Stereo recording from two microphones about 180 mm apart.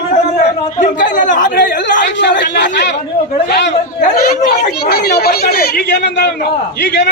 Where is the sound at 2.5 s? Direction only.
70° left (ahead or behind).